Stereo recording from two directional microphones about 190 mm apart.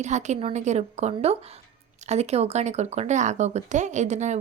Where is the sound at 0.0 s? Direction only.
35° right (ahead or behind).